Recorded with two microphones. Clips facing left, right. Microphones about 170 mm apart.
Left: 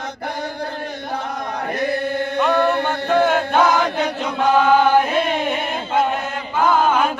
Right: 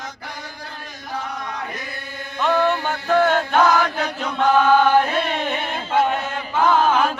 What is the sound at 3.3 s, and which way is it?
Chant, 5° left (ahead or behind).